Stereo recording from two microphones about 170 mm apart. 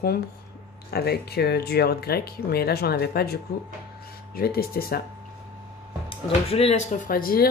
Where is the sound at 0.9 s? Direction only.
70° left (ahead or behind).